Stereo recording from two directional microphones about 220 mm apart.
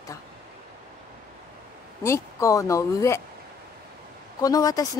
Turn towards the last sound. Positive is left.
turn(degrees=15)  # may be behind; listen again after turning